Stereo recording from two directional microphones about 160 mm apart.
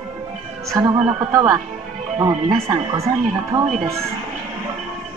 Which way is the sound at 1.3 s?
20° right (ahead or behind).